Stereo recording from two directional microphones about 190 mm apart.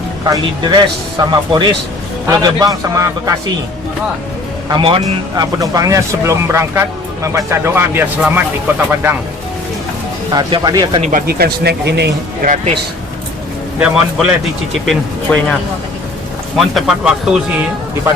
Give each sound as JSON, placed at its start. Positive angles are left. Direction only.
{"t": 0.3, "sound": "speech", "side_deg": -20}
{"t": 4.7, "sound": "speech", "side_deg": -30}
{"t": 10.3, "sound": "speech", "side_deg": -20}
{"t": 11.3, "sound": "speech", "side_deg": -55}
{"t": 13.7, "sound": "speech", "side_deg": -5}
{"t": 16.6, "sound": "speech", "side_deg": 0}